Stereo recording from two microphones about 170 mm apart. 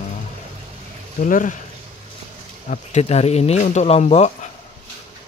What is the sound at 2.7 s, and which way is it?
Speech, 40° left (ahead or behind).